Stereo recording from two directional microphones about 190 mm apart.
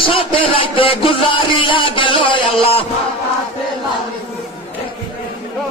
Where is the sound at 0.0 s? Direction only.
30° left (ahead or behind).